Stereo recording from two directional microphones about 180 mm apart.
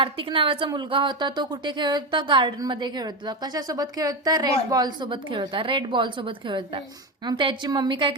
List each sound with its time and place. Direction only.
0.0 s a woman's voice: 30° right (ahead or behind)